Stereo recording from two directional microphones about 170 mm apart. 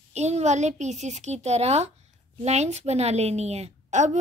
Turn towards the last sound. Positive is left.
turn(degrees=-45)  # may be behind; listen again after turning